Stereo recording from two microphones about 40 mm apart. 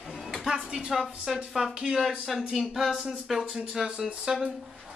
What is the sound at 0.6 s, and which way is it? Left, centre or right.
Speech, centre.